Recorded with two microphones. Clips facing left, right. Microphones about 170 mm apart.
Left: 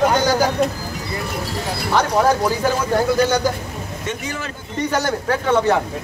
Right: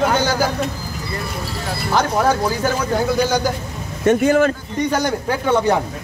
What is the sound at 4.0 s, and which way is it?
Speech, 55° right (ahead or behind).